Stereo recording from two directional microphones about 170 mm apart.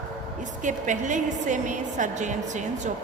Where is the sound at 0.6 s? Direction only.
45° right (ahead or behind).